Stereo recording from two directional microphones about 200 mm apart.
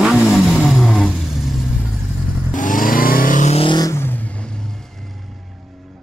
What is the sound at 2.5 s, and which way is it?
Vehicle, 40° left (ahead or behind).